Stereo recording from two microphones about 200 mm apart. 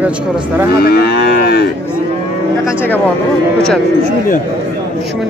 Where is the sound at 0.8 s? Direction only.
50° left (ahead or behind).